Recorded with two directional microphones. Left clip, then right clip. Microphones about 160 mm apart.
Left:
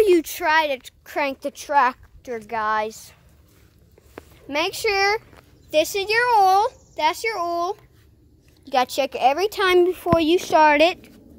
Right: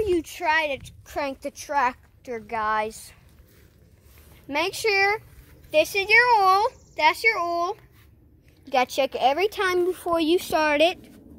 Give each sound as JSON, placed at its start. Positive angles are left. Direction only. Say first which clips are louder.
{"t": 0.0, "sound": "speech", "louder": "left 7 dB", "side_deg": 55}
{"t": 0.5, "sound": "a woman's voice", "louder": "left 3 dB", "side_deg": 25}
{"t": 4.5, "sound": "a woman's voice", "louder": "left 2 dB", "side_deg": 20}
{"t": 4.9, "sound": "speech", "louder": "left 1 dB", "side_deg": 60}
{"t": 5.7, "sound": "speech", "louder": "right 1 dB", "side_deg": 25}